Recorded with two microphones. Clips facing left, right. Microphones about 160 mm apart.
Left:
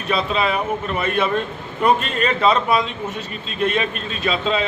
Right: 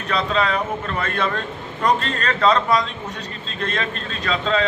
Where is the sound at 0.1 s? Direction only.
10° left (ahead or behind).